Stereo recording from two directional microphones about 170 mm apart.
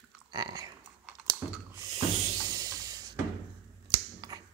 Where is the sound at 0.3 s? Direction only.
20° right (ahead or behind).